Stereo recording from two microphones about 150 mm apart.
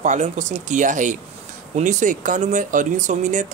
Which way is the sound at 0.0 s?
50° right (ahead or behind).